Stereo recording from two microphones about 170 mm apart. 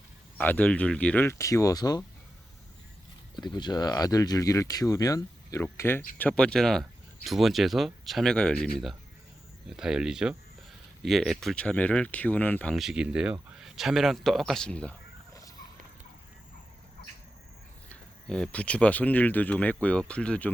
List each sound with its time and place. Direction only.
0.3 s speech: 10° left (ahead or behind)
3.3 s speech: 25° left (ahead or behind); by 14.9 s 5° left (ahead or behind)
17.8 s speech: 5° left (ahead or behind)